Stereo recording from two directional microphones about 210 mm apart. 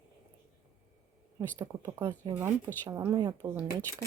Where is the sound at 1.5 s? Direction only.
15° right (ahead or behind).